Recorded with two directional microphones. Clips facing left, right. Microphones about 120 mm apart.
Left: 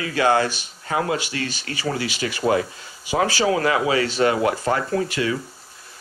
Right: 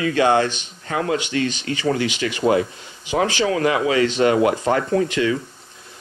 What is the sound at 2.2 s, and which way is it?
Speech, 40° left (ahead or behind).